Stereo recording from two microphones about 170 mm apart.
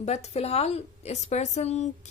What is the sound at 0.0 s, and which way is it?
A woman's voice, 40° left (ahead or behind).